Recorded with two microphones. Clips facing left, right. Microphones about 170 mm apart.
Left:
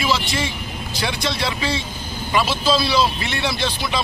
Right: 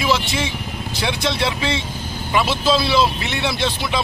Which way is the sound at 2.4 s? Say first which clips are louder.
Right 1 dB; 20° right (ahead or behind).